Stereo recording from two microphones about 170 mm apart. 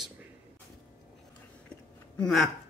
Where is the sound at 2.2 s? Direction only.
Centre (ahead or behind).